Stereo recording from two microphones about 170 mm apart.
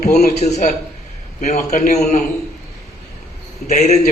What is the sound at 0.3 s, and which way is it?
A man's voice, 40° left (ahead or behind).